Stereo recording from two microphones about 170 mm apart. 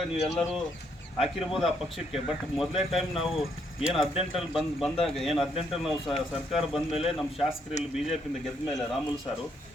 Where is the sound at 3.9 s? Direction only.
35° left (ahead or behind).